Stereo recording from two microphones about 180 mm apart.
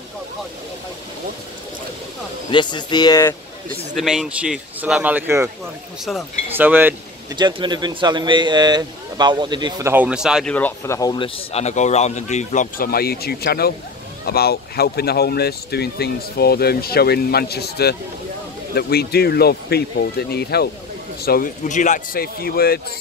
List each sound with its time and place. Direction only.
2.5 s speech: 25° left (ahead or behind)
3.9 s speech: centre (ahead or behind)
6.5 s speech: 10° right (ahead or behind)
7.3 s speech: 25° right (ahead or behind)
10.0 s speech: 5° right (ahead or behind)
10.5 s speech: 10° left (ahead or behind); by 21.5 s 60° left (ahead or behind)
21.6 s speech: 45° left (ahead or behind)